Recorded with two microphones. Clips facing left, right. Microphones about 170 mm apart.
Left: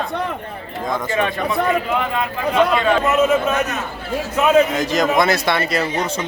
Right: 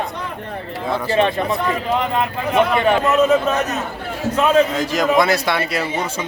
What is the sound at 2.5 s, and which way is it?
Speech, 15° right (ahead or behind).